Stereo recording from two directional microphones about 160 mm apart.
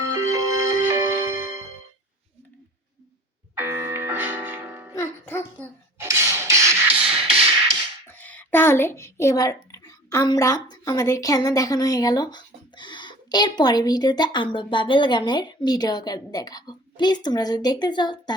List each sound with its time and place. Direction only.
0.1 s music: 20° right (ahead or behind)
3.5 s music: 15° right (ahead or behind)
4.9 s music: 15° left (ahead or behind)
6.0 s a sound: 15° right (ahead or behind)
7.0 s music: 35° right (ahead or behind)
8.2 s a woman's voice: 10° left (ahead or behind); by 18.3 s 25° left (ahead or behind)